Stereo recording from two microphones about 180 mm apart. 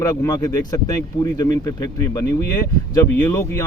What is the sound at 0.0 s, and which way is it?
Speech, 20° left (ahead or behind).